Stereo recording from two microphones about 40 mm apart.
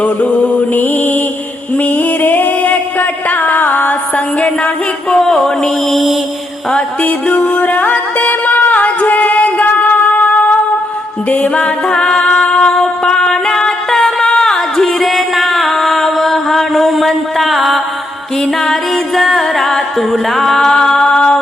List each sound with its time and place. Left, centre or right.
0.0 s music: left
4.4 s music: left
5.1 s music: centre
7.0 s music: left
8.7 s music: left
11.5 s music: left
14.9 s music: centre